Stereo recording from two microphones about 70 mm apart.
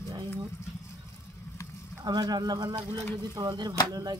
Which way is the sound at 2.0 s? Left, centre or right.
Right.